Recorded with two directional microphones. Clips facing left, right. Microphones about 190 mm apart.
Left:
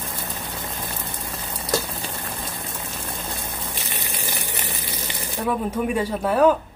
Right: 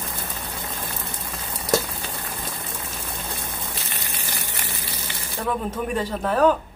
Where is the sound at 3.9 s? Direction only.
15° left (ahead or behind).